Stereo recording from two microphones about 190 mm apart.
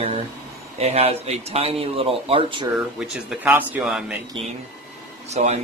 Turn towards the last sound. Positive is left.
turn(degrees=-35)  # may be behind; listen again after turning